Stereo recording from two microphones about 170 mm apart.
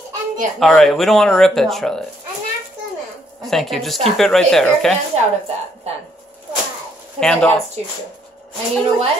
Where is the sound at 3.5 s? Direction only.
Centre (ahead or behind).